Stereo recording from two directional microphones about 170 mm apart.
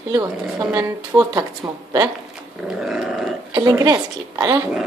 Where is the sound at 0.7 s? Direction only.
20° right (ahead or behind).